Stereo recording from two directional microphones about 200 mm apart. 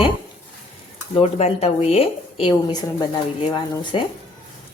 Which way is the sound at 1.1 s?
30° left (ahead or behind).